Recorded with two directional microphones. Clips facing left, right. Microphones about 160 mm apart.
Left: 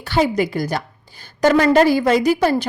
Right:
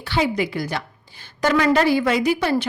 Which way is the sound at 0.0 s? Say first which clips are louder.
Left 4 dB; 45° left (ahead or behind).